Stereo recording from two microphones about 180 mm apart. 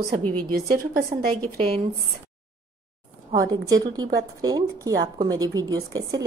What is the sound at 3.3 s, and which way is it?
A woman's voice, 20° right (ahead or behind).